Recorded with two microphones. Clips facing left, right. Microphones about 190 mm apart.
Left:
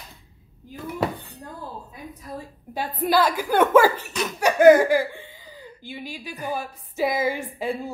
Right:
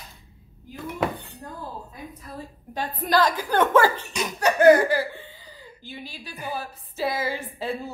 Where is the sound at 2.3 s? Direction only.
10° left (ahead or behind).